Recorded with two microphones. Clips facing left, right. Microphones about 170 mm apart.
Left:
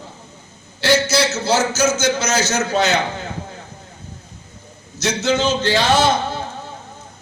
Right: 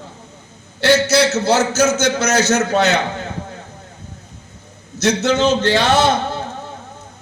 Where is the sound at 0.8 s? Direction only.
60° right (ahead or behind).